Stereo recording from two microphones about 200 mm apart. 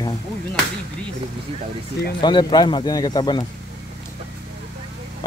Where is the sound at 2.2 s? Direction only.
20° left (ahead or behind).